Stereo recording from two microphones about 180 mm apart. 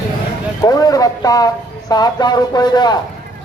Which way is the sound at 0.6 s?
20° left (ahead or behind).